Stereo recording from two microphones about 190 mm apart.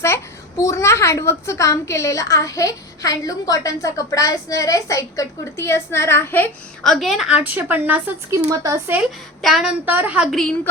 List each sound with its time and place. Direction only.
0.0 s a child's voice: 15° left (ahead or behind); by 9.0 s 20° right (ahead or behind)
9.0 s a woman's voice: centre (ahead or behind)
10.3 s a woman's voice: 5° left (ahead or behind)